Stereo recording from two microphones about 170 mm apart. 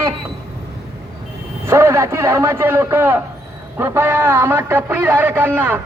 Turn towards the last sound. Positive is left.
turn(degrees=-10)  # may be behind; listen again after turning